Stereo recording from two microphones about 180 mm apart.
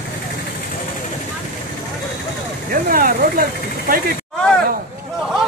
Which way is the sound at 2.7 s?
50° right (ahead or behind).